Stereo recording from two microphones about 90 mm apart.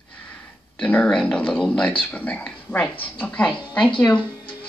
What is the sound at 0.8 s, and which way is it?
A woman's voice, 15° left (ahead or behind).